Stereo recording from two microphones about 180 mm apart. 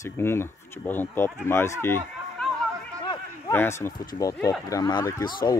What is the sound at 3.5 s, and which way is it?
Speech, 15° left (ahead or behind).